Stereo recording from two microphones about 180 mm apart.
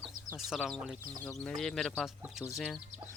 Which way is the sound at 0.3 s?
Centre (ahead or behind).